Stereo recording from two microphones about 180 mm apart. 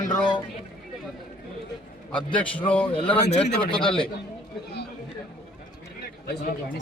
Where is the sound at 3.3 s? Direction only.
35° left (ahead or behind).